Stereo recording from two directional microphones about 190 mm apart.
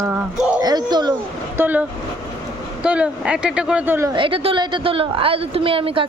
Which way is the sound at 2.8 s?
5° right (ahead or behind).